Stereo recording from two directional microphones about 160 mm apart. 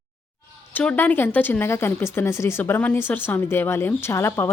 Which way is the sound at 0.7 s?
10° left (ahead or behind).